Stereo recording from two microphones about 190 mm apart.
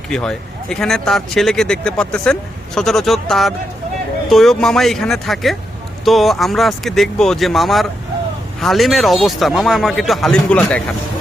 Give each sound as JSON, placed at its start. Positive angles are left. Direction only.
{"t": 0.1, "sound": "speech", "side_deg": 5}